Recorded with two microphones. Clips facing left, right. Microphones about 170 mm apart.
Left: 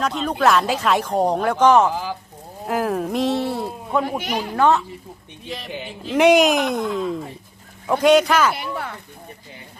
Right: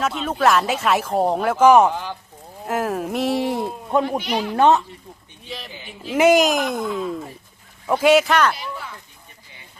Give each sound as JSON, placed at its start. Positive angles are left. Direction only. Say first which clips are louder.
{"t": 0.0, "sound": "speech", "louder": "even", "side_deg": -5}
{"t": 1.9, "sound": "speech", "louder": "left 2 dB", "side_deg": 5}
{"t": 4.2, "sound": "speech", "louder": "right 2 dB", "side_deg": 45}
{"t": 4.5, "sound": "speech", "louder": "right 2 dB", "side_deg": -20}
{"t": 5.5, "sound": "speech", "louder": "left 5 dB", "side_deg": 0}
{"t": 8.5, "sound": "speech", "louder": "left 4 dB", "side_deg": 60}